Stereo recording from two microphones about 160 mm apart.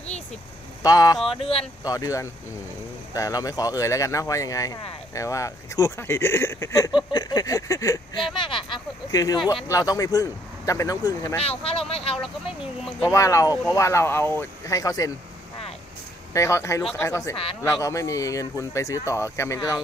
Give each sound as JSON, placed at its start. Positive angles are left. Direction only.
{"t": 0.8, "sound": "speech", "side_deg": 20}
{"t": 1.3, "sound": "speech", "side_deg": 35}
{"t": 1.9, "sound": "speech", "side_deg": 20}
{"t": 8.4, "sound": "speech", "side_deg": 30}
{"t": 11.4, "sound": "speech", "side_deg": 35}
{"t": 13.0, "sound": "speech", "side_deg": 20}
{"t": 16.3, "sound": "speech", "side_deg": 20}
{"t": 16.8, "sound": "speech", "side_deg": 5}
{"t": 17.1, "sound": "speech", "side_deg": 20}